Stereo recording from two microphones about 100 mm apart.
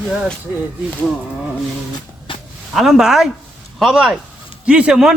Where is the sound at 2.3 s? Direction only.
55° left (ahead or behind).